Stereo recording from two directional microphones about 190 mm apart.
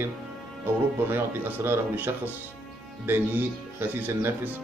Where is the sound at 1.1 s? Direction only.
10° right (ahead or behind).